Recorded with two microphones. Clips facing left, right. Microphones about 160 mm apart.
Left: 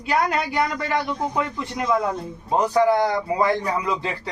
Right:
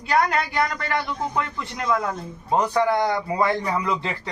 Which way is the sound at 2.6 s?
10° left (ahead or behind).